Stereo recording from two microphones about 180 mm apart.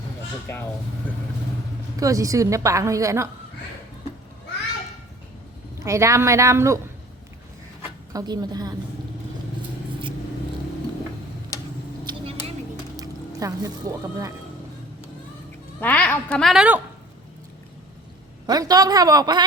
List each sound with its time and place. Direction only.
0.4 s speech: 10° left (ahead or behind)
2.0 s a woman's voice: 20° right (ahead or behind)
5.8 s a woman's voice: 15° right (ahead or behind)
8.1 s a woman's voice: 20° right (ahead or behind)
12.0 s a sound: 30° right (ahead or behind)
13.0 s speech: 20° right (ahead or behind)
15.8 s a woman's voice: 10° left (ahead or behind)
18.4 s a woman's voice: 20° right (ahead or behind)